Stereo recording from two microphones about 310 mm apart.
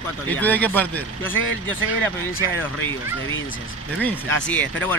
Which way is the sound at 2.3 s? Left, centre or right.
Left.